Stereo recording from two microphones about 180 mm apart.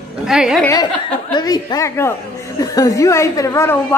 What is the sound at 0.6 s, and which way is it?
A woman's voice, 20° left (ahead or behind).